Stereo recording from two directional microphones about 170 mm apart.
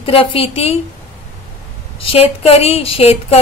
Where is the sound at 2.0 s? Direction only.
35° left (ahead or behind).